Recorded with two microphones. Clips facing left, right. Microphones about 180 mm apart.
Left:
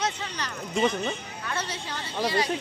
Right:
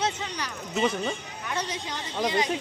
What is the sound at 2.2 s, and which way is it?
Speech, 15° right (ahead or behind).